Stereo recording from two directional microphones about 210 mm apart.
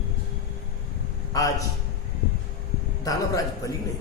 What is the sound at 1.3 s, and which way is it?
Speech, 15° left (ahead or behind).